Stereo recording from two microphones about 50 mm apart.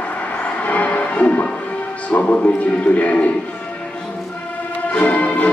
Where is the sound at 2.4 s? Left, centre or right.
Left.